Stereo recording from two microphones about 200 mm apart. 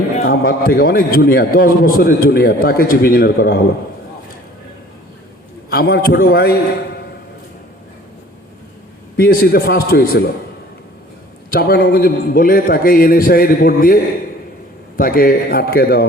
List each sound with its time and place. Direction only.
0.2 s a man's voice: 45° left (ahead or behind)
5.7 s a man's voice: 50° left (ahead or behind)
9.1 s a man's voice: 50° left (ahead or behind)
11.5 s a man's voice: 50° left (ahead or behind)